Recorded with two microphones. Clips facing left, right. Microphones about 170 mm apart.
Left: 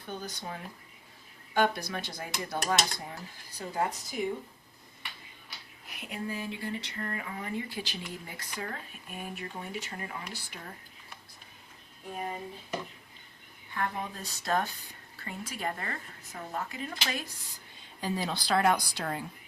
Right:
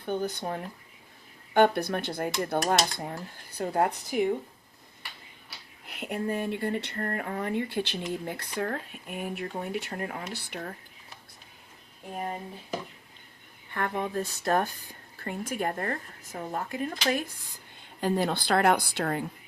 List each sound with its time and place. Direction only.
0.0 s speech: 60° right (ahead or behind)
5.8 s speech: 60° right (ahead or behind)
13.7 s speech: 55° right (ahead or behind)